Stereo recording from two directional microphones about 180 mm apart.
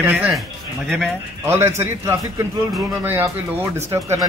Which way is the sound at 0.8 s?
5° left (ahead or behind).